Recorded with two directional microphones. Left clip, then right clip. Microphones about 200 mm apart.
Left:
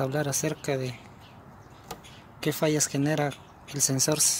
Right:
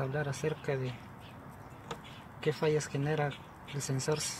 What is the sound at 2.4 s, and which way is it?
Speech, 60° left (ahead or behind).